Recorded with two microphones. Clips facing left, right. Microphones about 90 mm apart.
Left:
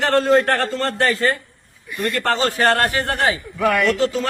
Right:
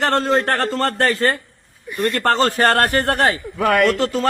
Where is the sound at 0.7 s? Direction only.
45° right (ahead or behind).